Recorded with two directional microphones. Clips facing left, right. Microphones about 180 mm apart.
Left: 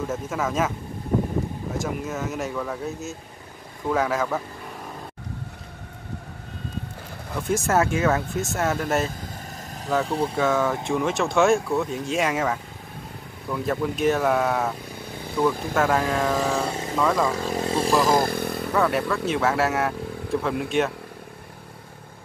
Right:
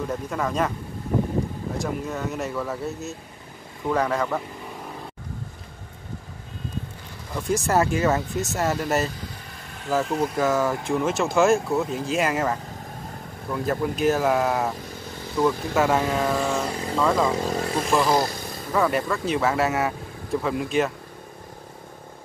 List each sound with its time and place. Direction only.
0.1 s speech: centre (ahead or behind)
1.8 s speech: centre (ahead or behind)
7.3 s speech: centre (ahead or behind)
10.0 s speech: 30° left (ahead or behind)
10.3 s speech: centre (ahead or behind)
17.6 s vehicle: 25° left (ahead or behind)
18.0 s motorcycle: 50° left (ahead or behind)
18.7 s speech: centre (ahead or behind)